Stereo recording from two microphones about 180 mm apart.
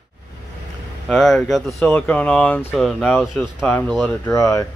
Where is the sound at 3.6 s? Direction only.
10° left (ahead or behind).